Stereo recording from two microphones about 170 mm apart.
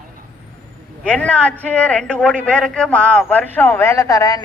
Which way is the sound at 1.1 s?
5° left (ahead or behind).